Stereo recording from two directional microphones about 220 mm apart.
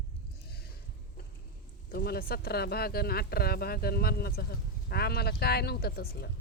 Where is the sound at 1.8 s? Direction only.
45° left (ahead or behind).